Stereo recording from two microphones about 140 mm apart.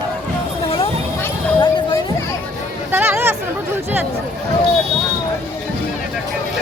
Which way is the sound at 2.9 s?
15° right (ahead or behind).